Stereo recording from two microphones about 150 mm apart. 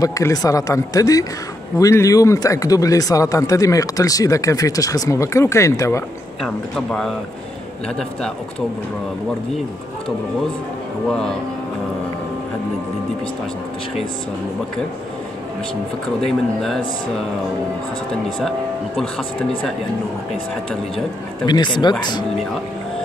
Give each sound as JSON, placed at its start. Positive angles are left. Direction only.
{"t": 0.0, "sound": "speech", "side_deg": 25}
{"t": 6.4, "sound": "speech", "side_deg": 5}
{"t": 11.1, "sound": "speech", "side_deg": 5}
{"t": 16.3, "sound": "speech", "side_deg": 5}
{"t": 21.5, "sound": "speech", "side_deg": 30}